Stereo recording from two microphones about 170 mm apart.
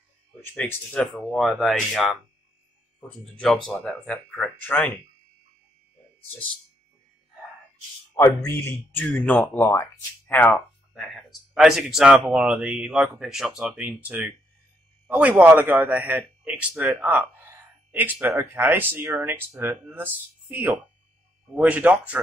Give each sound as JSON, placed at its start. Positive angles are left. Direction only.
{"t": 1.1, "sound": "speech", "side_deg": 0}
{"t": 8.1, "sound": "speech", "side_deg": 15}
{"t": 9.6, "sound": "speech", "side_deg": 15}